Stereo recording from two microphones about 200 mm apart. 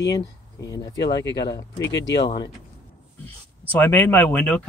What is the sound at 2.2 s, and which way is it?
Speech, 20° left (ahead or behind).